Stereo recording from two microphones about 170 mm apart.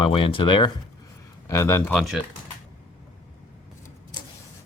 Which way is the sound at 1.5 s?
15° left (ahead or behind).